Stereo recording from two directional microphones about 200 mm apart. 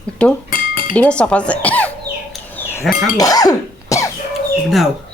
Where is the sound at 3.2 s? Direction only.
20° left (ahead or behind).